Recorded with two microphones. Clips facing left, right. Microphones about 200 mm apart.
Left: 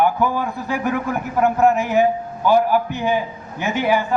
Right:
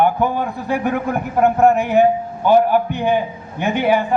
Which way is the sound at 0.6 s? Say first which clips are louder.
Right 3 dB; 55° right (ahead or behind).